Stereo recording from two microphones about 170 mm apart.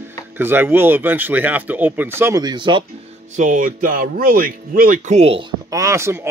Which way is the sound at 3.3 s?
50° right (ahead or behind).